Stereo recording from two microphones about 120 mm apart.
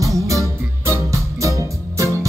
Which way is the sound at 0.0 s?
25° right (ahead or behind).